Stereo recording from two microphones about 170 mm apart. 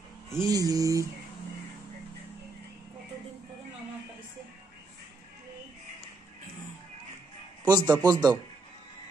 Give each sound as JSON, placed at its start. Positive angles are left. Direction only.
{"t": 0.3, "sound": "a man's voice", "side_deg": -20}
{"t": 7.6, "sound": "a man's voice", "side_deg": -25}